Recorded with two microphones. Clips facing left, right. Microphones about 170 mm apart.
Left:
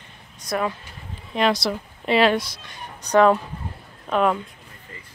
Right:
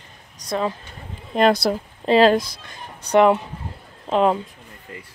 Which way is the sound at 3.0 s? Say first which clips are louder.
Right 1 dB; 25° right (ahead or behind).